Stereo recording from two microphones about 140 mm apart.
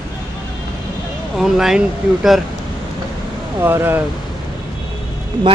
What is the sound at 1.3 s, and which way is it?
Speech, centre (ahead or behind).